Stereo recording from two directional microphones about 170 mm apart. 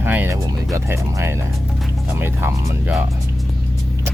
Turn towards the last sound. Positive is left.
turn(degrees=-10)  # may be behind; listen again after turning